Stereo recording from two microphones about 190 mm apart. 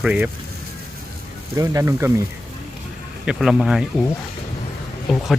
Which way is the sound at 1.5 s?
15° right (ahead or behind).